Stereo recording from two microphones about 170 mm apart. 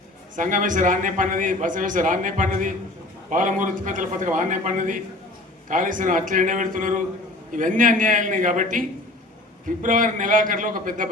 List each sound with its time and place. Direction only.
0.3 s a man's voice: 50° right (ahead or behind)